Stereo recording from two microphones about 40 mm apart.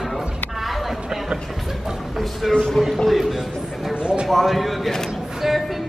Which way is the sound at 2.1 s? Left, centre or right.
Centre.